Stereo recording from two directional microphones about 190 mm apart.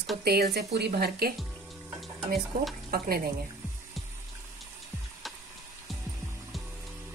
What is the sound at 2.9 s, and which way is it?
Speech, 50° right (ahead or behind).